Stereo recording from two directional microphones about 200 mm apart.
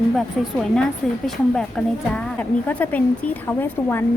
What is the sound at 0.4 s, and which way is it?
A woman's voice, centre (ahead or behind).